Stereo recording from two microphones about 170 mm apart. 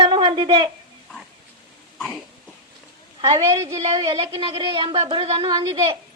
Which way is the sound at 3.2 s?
30° right (ahead or behind).